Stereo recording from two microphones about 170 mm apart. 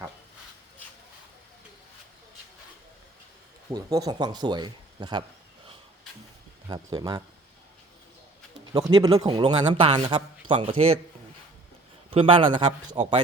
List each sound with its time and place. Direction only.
3.7 s speech: 20° right (ahead or behind)
6.7 s speech: 20° right (ahead or behind)
8.7 s a man's voice: 25° right (ahead or behind)
12.1 s a man's voice: 30° right (ahead or behind)